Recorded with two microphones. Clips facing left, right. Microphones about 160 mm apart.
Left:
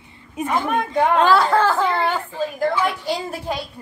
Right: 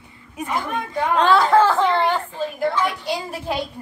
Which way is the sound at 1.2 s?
Centre (ahead or behind).